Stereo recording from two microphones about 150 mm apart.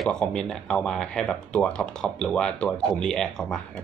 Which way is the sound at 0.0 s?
5° left (ahead or behind).